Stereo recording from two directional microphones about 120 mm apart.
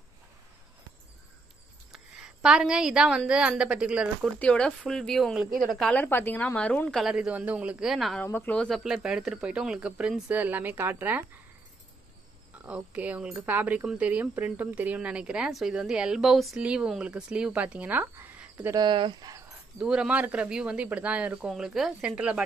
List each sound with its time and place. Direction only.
1.9 s a woman's voice: 5° right (ahead or behind)
4.4 s a woman's voice: 10° left (ahead or behind)
5.9 s a woman's voice: 15° left (ahead or behind)
7.0 s a woman's voice: 5° right (ahead or behind)
8.2 s a woman's voice: 15° left (ahead or behind)
8.5 s speech: centre (ahead or behind); by 11.2 s 15° right (ahead or behind)
12.5 s speech: 10° right (ahead or behind)
18.8 s speech: 40° right (ahead or behind)
19.8 s speech: 5° right (ahead or behind)